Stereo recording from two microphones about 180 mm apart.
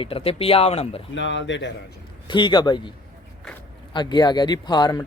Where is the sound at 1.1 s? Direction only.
90° left.